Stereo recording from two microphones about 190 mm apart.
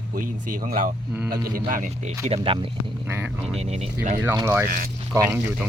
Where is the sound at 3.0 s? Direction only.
10° right (ahead or behind).